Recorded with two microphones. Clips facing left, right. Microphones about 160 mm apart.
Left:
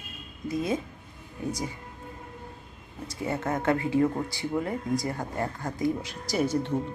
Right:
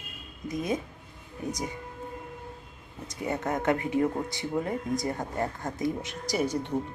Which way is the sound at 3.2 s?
20° right (ahead or behind).